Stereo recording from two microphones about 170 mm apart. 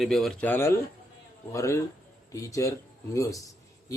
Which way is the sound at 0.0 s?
Centre (ahead or behind).